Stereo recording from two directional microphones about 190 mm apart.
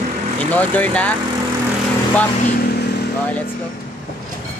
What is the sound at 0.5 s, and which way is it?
Speech, 10° left (ahead or behind).